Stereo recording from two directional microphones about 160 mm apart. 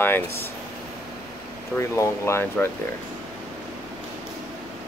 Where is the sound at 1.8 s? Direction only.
15° left (ahead or behind).